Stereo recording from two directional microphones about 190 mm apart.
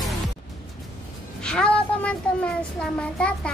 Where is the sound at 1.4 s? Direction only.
5° left (ahead or behind).